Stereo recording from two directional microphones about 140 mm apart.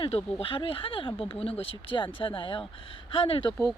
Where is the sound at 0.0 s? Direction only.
45° left (ahead or behind).